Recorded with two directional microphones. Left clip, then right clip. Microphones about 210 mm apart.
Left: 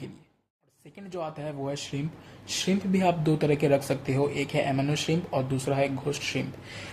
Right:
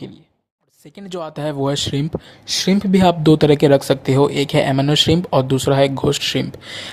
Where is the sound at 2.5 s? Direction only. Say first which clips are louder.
Right 11 dB; 40° right (ahead or behind).